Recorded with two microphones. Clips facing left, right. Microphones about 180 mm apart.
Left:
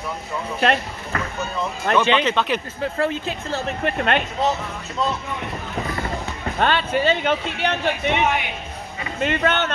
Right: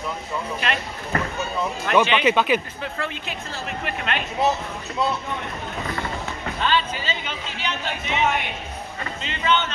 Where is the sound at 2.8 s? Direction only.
40° left (ahead or behind).